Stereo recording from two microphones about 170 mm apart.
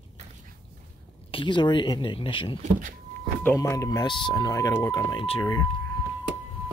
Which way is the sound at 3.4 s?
20° left (ahead or behind).